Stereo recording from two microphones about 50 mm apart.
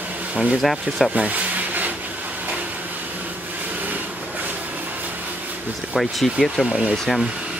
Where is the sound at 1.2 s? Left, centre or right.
Right.